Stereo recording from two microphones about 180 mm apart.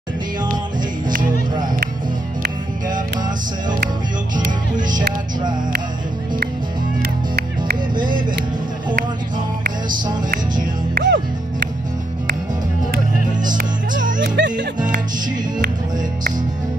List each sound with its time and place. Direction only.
1.0 s music: 50° right (ahead or behind)
7.0 s music: 65° right (ahead or behind)
10.3 s music: 50° right (ahead or behind)
11.1 s music: 75° right (ahead or behind)
13.5 s music: 45° right (ahead or behind)
14.2 s music: 75° right (ahead or behind)